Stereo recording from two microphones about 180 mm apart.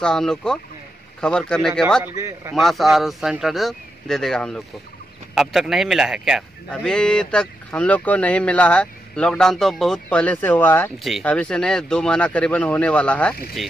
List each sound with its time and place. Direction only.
0.0 s speech: 5° left (ahead or behind)
2.1 s a man's voice: 15° right (ahead or behind)
2.5 s speech: centre (ahead or behind)